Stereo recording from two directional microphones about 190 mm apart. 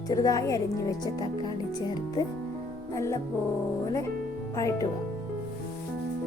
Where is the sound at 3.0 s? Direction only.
15° left (ahead or behind).